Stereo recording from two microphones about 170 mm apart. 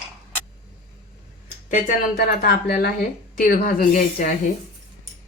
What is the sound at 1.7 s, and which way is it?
A woman's voice, 65° left (ahead or behind).